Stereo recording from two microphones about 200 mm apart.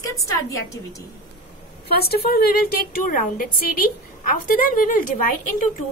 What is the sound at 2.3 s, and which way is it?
A woman's voice, 50° left (ahead or behind).